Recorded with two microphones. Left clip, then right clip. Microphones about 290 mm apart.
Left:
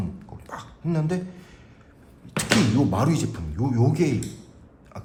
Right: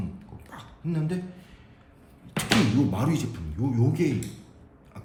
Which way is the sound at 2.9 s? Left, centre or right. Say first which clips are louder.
Left 4 dB; left.